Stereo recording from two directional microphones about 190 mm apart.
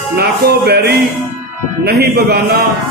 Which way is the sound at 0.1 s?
55° right (ahead or behind).